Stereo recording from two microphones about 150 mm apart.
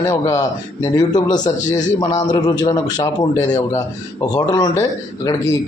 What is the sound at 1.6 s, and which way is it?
Speech, 55° left (ahead or behind).